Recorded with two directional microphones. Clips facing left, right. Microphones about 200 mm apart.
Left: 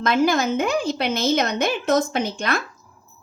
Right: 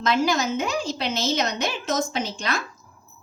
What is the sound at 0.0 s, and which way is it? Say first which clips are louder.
A woman's voice: left 3 dB; 55° left (ahead or behind).